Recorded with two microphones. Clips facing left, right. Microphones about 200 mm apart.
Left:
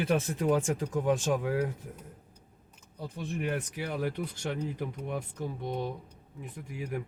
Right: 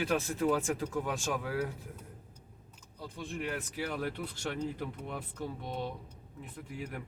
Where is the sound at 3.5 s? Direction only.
15° left (ahead or behind).